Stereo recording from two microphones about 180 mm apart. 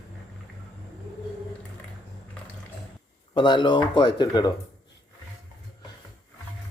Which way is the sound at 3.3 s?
25° left (ahead or behind).